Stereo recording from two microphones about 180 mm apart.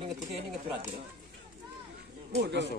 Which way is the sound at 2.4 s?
70° right (ahead or behind).